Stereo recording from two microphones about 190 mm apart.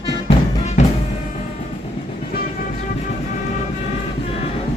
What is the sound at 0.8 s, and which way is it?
Music, 35° left (ahead or behind).